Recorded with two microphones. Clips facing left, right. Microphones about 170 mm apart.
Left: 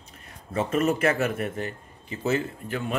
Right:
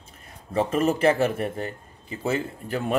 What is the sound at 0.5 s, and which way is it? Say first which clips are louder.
A man's voice: right 2 dB; 30° right (ahead or behind).